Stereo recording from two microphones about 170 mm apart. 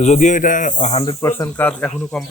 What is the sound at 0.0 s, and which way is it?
A man's voice, 45° left (ahead or behind).